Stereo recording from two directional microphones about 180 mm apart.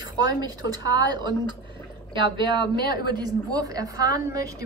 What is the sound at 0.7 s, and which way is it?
A woman's voice, 20° right (ahead or behind).